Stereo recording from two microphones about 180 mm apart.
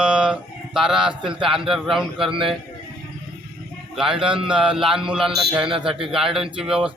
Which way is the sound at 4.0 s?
5° right (ahead or behind).